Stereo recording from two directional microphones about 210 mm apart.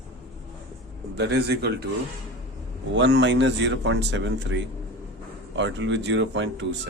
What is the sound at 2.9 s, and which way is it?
Speech, 55° right (ahead or behind).